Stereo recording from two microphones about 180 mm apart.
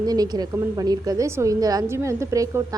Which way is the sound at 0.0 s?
20° right (ahead or behind).